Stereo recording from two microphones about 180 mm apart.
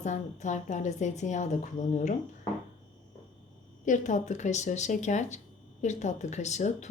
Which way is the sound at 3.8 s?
45° left (ahead or behind).